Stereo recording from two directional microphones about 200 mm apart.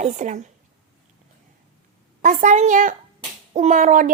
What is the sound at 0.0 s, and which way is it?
Speech, 35° right (ahead or behind).